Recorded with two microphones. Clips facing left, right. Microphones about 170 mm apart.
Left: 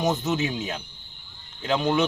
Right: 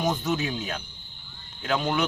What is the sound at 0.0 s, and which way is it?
A man's voice, 25° left (ahead or behind).